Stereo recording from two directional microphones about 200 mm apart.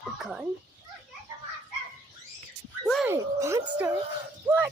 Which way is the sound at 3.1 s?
15° right (ahead or behind).